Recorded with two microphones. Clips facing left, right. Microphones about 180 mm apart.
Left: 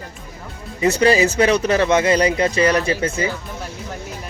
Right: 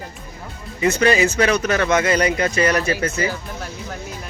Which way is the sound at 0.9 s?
30° left (ahead or behind).